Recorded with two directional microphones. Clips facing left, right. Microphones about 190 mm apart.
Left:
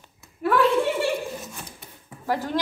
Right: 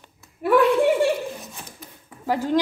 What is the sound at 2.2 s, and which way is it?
Speech, 15° right (ahead or behind).